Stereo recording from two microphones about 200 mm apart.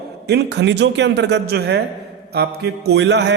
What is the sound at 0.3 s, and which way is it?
A man's voice, 55° right (ahead or behind).